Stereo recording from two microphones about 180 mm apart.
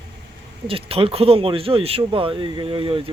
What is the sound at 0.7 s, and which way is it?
Speech, 30° right (ahead or behind).